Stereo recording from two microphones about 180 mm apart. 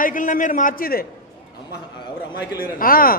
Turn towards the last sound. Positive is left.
turn(degrees=55)  # may be behind; listen again after turning